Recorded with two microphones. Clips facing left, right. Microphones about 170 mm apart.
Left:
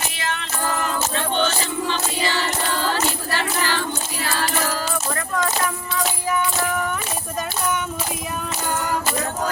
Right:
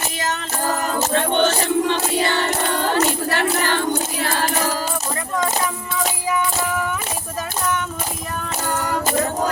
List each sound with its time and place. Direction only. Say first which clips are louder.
0.2 s music: right 2 dB; 40° right (ahead or behind)
1.1 s music: right 7 dB; 60° right (ahead or behind)